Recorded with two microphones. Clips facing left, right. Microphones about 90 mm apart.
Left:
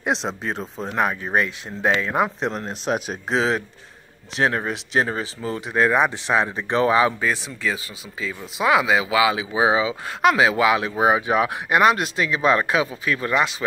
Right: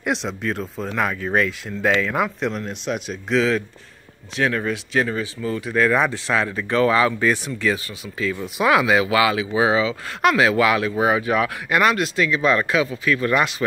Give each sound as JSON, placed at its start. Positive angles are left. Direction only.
{"t": 0.0, "sound": "speech", "side_deg": 35}
{"t": 0.7, "sound": "speech", "side_deg": 20}
{"t": 3.3, "sound": "speech", "side_deg": 30}
{"t": 7.2, "sound": "speech", "side_deg": 0}
{"t": 12.4, "sound": "speech", "side_deg": 30}